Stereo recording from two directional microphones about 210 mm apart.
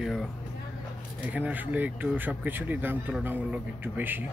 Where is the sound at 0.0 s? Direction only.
Centre (ahead or behind).